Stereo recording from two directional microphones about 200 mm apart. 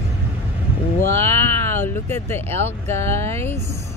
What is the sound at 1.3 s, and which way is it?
Speech, 15° left (ahead or behind).